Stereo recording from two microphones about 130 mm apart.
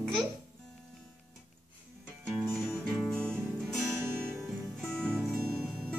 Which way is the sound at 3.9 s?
20° right (ahead or behind).